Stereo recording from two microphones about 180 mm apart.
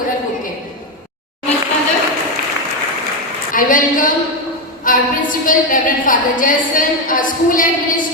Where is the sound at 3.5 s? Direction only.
50° left (ahead or behind).